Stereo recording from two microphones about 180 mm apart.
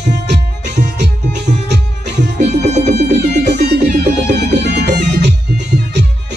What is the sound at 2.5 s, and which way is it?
Music, 40° right (ahead or behind).